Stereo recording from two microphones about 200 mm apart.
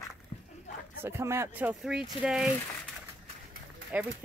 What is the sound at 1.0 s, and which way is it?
Speech, 10° right (ahead or behind).